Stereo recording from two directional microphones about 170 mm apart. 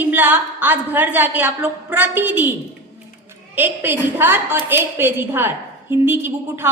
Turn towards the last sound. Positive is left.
turn(degrees=-15)  # may be behind; listen again after turning